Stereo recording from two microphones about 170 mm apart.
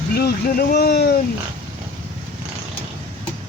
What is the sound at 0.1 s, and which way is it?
Speech, 65° left (ahead or behind).